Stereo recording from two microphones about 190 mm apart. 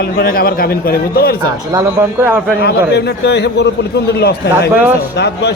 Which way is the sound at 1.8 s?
15° right (ahead or behind).